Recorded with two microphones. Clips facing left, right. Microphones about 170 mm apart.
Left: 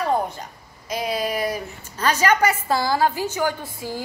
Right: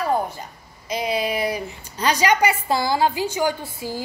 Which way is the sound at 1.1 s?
45° left (ahead or behind).